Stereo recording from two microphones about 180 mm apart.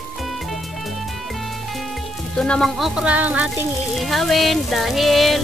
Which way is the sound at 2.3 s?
5° left (ahead or behind).